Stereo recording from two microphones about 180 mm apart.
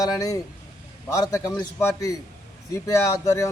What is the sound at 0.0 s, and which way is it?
Speech, 20° left (ahead or behind).